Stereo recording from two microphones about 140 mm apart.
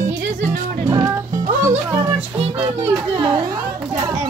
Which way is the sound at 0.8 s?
20° right (ahead or behind).